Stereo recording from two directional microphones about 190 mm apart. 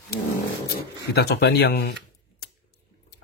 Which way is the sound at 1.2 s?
55° left (ahead or behind).